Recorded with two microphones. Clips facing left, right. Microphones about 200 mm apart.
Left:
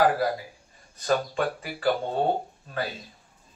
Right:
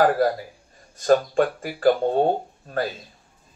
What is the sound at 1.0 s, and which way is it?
Speech, 45° right (ahead or behind).